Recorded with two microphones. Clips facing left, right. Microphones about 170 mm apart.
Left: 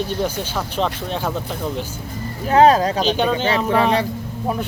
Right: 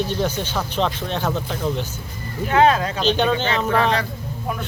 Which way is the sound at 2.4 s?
35° left (ahead or behind).